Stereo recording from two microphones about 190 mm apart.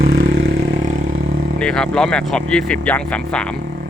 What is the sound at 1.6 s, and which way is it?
Speech, 5° left (ahead or behind).